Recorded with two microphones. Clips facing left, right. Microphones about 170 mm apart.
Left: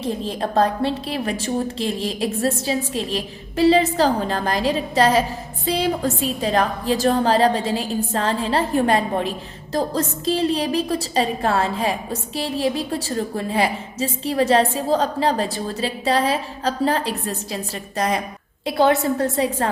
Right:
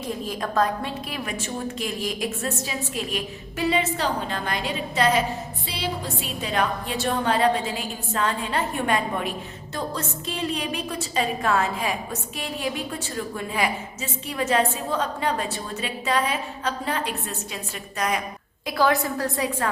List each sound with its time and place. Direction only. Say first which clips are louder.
0.0 s a woman's voice: left 5 dB; 30° left (ahead or behind)